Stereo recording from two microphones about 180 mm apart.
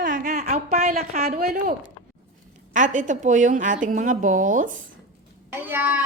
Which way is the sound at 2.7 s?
45° right (ahead or behind).